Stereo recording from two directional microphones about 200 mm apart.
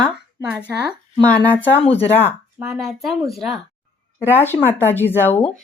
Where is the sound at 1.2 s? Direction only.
5° left (ahead or behind).